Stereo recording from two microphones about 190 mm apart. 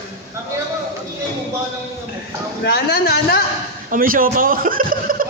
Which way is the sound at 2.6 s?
55° left (ahead or behind).